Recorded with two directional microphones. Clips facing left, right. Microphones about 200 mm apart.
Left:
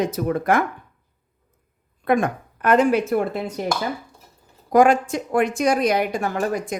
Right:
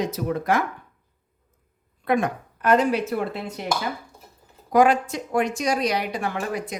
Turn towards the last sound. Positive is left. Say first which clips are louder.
# left 4 dB
turn(degrees=45)  # may be behind; listen again after turning